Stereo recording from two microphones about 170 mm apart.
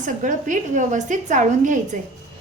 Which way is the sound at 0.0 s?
50° right (ahead or behind).